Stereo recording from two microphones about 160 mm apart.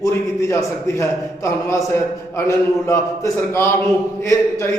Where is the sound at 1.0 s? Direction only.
20° left (ahead or behind).